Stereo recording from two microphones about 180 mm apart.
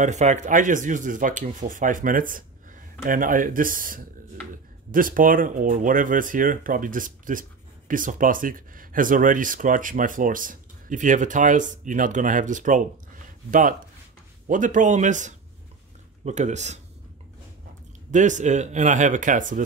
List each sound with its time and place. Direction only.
0.0 s speech: 40° right (ahead or behind)
18.1 s speech: 45° right (ahead or behind)